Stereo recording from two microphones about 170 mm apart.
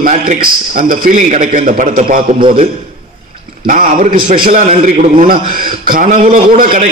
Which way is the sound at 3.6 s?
55° right (ahead or behind).